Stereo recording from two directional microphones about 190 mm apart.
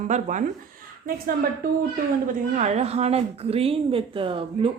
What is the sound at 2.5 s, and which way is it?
A woman's voice, 35° right (ahead or behind).